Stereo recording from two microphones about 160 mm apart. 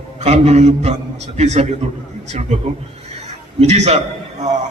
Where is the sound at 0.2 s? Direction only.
45° right (ahead or behind).